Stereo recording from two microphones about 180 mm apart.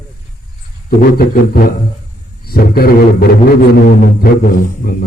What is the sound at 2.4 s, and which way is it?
Speech, 60° left (ahead or behind).